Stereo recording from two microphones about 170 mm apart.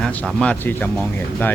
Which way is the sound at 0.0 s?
5° left (ahead or behind).